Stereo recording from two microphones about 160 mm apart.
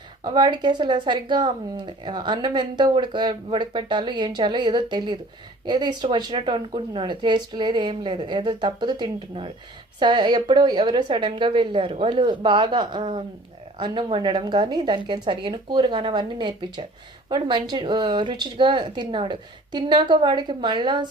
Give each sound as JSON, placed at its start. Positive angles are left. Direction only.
{"t": 0.3, "sound": "speech", "side_deg": -25}